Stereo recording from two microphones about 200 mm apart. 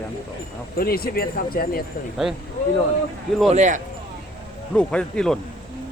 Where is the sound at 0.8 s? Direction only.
50° left (ahead or behind).